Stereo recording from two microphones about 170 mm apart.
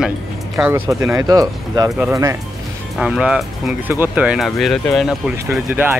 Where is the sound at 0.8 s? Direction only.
20° right (ahead or behind).